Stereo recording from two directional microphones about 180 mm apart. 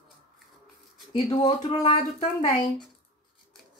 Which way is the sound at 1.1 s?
25° left (ahead or behind).